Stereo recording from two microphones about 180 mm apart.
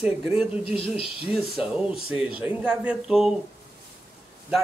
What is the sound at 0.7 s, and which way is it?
Speech, 30° left (ahead or behind).